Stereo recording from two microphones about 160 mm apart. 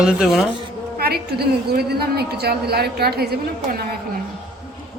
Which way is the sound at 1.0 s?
80° right.